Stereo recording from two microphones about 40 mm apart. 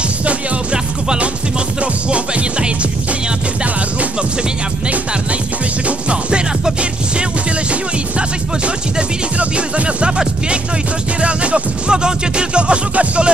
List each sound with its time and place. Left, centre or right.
1.0 s music: right
5.9 s music: right
7.7 s music: right
11.1 s music: right